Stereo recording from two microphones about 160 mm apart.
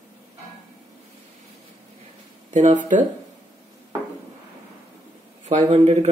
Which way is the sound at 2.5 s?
50° right (ahead or behind).